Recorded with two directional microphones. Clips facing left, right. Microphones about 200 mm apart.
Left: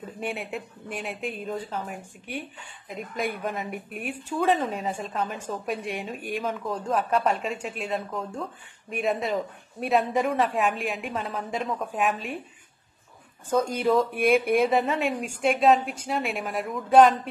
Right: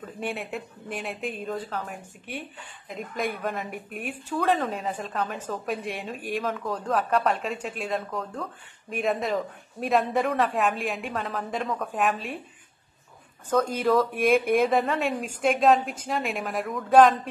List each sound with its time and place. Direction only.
0.3 s a man's voice: centre (ahead or behind)
14.1 s a man's voice: centre (ahead or behind)